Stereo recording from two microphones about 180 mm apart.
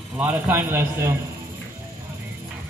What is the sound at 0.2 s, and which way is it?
Speech, 10° right (ahead or behind).